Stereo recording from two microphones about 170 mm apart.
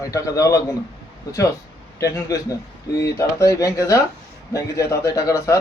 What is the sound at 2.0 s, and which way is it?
A man's voice, 20° left (ahead or behind).